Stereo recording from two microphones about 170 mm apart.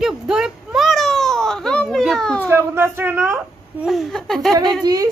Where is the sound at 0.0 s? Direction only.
5° right (ahead or behind).